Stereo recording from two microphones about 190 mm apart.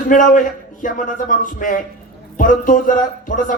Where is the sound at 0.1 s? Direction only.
45° left (ahead or behind).